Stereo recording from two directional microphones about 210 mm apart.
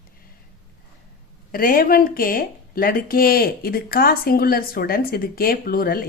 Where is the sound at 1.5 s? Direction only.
45° left (ahead or behind).